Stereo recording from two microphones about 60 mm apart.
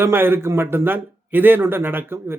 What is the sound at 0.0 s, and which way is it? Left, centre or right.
Speech, right.